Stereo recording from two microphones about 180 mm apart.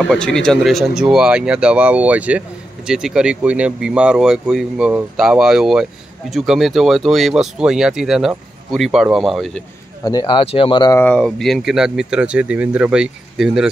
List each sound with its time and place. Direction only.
0.0 s speech: 5° left (ahead or behind)
10.0 s speech: 20° left (ahead or behind)
10.4 s speech: 30° left (ahead or behind)
11.0 s speech: 5° left (ahead or behind)